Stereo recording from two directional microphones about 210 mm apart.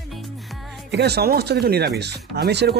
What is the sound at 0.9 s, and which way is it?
Speech, 50° right (ahead or behind).